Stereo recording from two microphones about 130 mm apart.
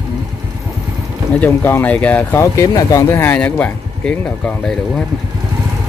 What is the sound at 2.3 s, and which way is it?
Speech, 25° left (ahead or behind).